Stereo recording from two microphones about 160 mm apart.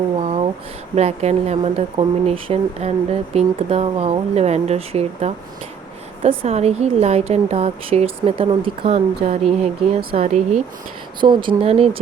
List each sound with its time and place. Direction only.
0.2 s a sound: 40° right (ahead or behind)
0.9 s speech: 45° right (ahead or behind)
10.2 s speech: 45° right (ahead or behind)
11.2 s speech: 30° right (ahead or behind)